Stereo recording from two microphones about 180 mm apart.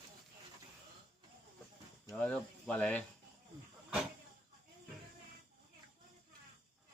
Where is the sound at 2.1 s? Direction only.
5° left (ahead or behind).